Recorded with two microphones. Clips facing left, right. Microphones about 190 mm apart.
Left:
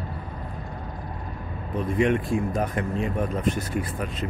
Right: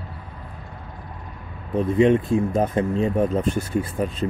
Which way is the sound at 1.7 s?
25° right (ahead or behind).